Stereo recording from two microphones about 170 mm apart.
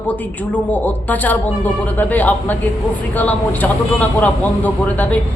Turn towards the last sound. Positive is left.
turn(degrees=10)  # may be behind; listen again after turning